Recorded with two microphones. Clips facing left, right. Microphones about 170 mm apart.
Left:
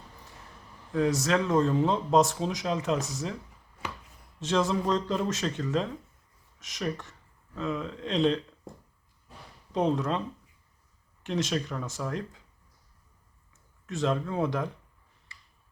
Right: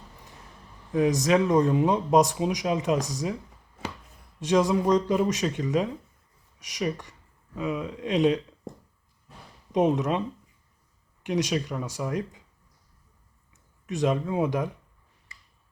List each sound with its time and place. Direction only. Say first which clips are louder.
0.9 s speech: right 4 dB; 15° right (ahead or behind)
4.4 s speech: right 4 dB; 15° right (ahead or behind)
9.7 s speech: right 4 dB; 20° right (ahead or behind)
13.5 s speech: right 4 dB; 15° right (ahead or behind)